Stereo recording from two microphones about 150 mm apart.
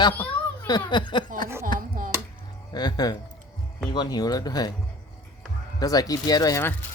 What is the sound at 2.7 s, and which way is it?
Speech, 25° left (ahead or behind).